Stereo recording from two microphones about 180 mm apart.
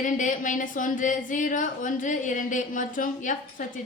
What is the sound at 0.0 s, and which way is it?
A woman's voice, 45° left (ahead or behind).